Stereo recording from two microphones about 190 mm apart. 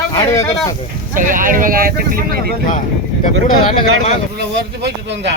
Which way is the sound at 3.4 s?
30° left (ahead or behind).